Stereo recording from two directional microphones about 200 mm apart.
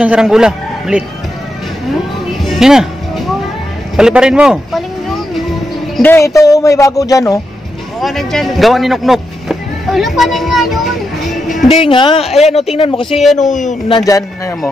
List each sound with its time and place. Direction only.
0.0 s speech: 5° right (ahead or behind)
2.4 s music: centre (ahead or behind)
3.9 s speech: 5° right (ahead or behind)
5.9 s speech: 10° left (ahead or behind)
8.0 s speech: centre (ahead or behind)
11.4 s music: centre (ahead or behind)
11.8 s a man's voice: 25° left (ahead or behind)
13.4 s speech: 40° left (ahead or behind)
13.8 s speech: 20° left (ahead or behind)